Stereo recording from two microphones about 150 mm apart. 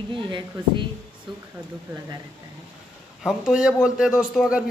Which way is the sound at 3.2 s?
5° right (ahead or behind).